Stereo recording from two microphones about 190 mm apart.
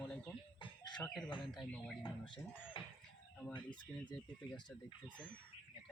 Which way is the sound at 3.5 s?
25° left (ahead or behind).